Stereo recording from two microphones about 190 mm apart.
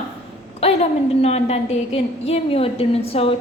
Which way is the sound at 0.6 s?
35° left (ahead or behind).